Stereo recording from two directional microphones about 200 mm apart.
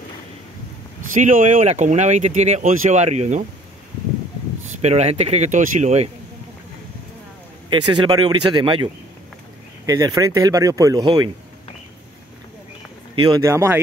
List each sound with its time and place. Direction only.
1.1 s speech: 40° right (ahead or behind)
4.8 s speech: 35° right (ahead or behind)
7.7 s speech: 20° right (ahead or behind)
9.8 s speech: 20° right (ahead or behind)
13.1 s speech: 15° right (ahead or behind)